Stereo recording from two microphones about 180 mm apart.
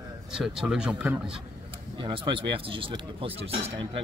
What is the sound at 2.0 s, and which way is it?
Speech, 25° right (ahead or behind).